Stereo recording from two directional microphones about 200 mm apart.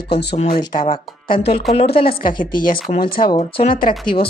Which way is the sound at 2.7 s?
45° left (ahead or behind).